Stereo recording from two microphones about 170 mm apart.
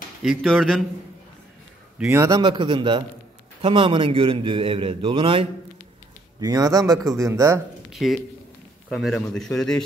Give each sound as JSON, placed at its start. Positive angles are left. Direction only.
{"t": 0.2, "sound": "a man's voice", "side_deg": 0}
{"t": 2.0, "sound": "a man's voice", "side_deg": -15}
{"t": 7.9, "sound": "a man's voice", "side_deg": 0}